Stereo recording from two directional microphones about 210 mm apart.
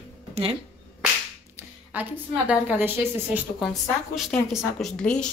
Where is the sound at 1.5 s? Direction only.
10° right (ahead or behind).